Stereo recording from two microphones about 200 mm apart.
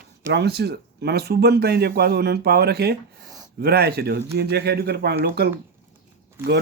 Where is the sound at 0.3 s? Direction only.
55° right (ahead or behind).